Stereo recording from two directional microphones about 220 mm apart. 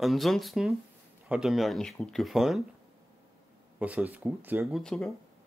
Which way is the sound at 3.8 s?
5° right (ahead or behind).